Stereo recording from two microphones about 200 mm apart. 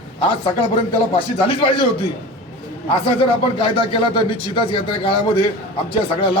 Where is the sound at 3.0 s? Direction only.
25° left (ahead or behind).